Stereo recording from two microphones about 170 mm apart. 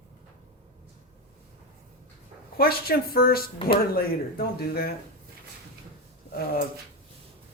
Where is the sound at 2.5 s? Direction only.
65° left (ahead or behind).